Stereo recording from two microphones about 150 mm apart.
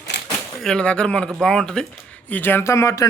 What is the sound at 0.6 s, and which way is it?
Speech, 5° left (ahead or behind).